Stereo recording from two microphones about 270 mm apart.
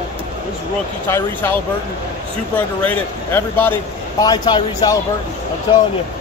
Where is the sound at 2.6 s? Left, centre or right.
Centre.